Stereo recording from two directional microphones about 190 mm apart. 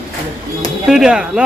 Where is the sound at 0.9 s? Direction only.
5° right (ahead or behind).